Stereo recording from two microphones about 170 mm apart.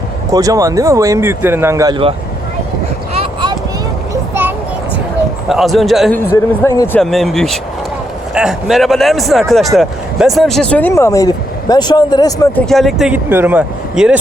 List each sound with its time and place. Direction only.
0.3 s speech: 20° right (ahead or behind)
4.1 s child singing: 10° right (ahead or behind)
5.5 s speech: centre (ahead or behind)
6.3 s speech: 20° left (ahead or behind)
7.0 s speech: centre (ahead or behind); by 12.5 s 20° left (ahead or behind)
12.5 s speech: centre (ahead or behind)